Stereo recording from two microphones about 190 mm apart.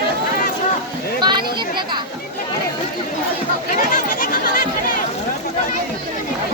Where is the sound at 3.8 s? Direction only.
45° left (ahead or behind).